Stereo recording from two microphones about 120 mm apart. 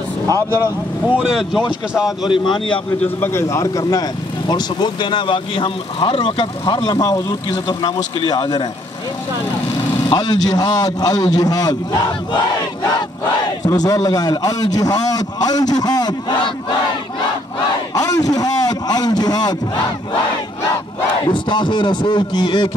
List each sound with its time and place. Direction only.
0.3 s speech: 20° right (ahead or behind)
1.0 s speech: 5° right (ahead or behind)
2.0 s speech: 40° left (ahead or behind)
3.0 s speech: 20° left (ahead or behind); by 8.6 s 40° left (ahead or behind)
10.0 s speech: 35° left (ahead or behind)
13.7 s speech: 30° left (ahead or behind)
17.9 s speech: 30° left (ahead or behind)
21.3 s speech: 40° left (ahead or behind)